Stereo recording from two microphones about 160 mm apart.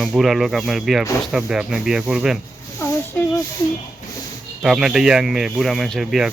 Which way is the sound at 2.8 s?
15° left (ahead or behind).